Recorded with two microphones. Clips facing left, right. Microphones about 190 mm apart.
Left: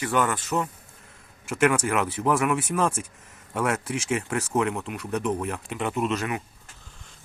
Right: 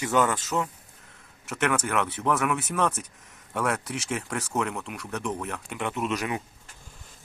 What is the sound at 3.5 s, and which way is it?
Speech, 5° left (ahead or behind).